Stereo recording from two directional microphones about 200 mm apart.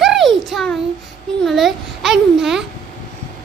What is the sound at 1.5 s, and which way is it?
Babbling, centre (ahead or behind).